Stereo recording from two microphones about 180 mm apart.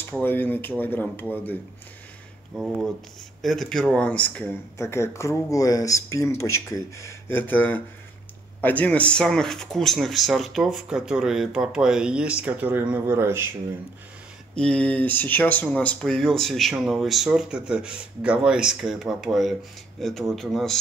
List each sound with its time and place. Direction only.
0.1 s speech: 10° left (ahead or behind)
2.5 s speech: 5° right (ahead or behind)
14.5 s speech: 5° left (ahead or behind)